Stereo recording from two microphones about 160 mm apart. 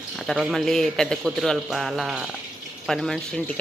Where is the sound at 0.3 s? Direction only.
Centre (ahead or behind).